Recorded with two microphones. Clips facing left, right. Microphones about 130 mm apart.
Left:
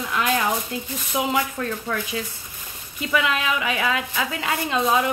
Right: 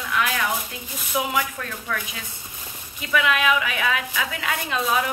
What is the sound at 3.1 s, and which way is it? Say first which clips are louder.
A woman's voice: right 2 dB; 25° left (ahead or behind).